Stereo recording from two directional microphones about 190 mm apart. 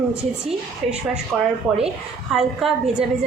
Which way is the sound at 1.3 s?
Centre (ahead or behind).